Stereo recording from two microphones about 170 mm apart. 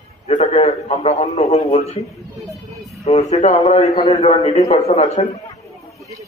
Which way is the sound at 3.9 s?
20° left (ahead or behind).